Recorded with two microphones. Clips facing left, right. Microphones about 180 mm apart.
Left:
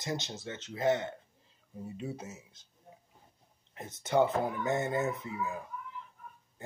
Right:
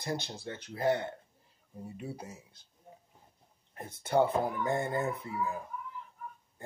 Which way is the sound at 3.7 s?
20° left (ahead or behind).